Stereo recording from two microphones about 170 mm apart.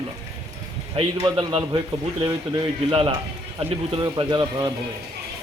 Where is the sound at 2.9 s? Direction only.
30° right (ahead or behind).